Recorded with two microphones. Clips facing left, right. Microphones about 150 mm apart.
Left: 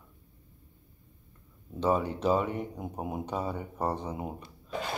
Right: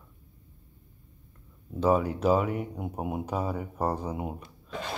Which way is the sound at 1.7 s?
5° right (ahead or behind).